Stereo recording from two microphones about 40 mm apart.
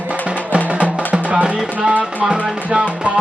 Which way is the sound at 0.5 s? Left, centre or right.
Right.